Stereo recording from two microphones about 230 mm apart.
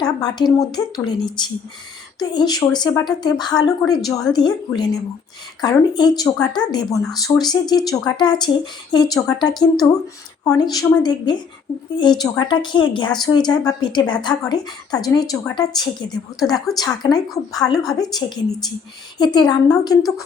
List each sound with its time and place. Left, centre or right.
0.0 s a woman's voice: centre